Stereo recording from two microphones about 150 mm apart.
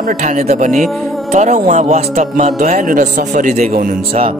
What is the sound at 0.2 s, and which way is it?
Speech, 50° right (ahead or behind).